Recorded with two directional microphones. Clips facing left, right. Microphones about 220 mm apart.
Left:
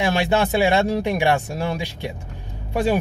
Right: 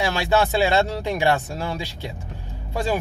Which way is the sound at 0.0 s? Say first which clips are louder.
Left 1 dB; 15° left (ahead or behind).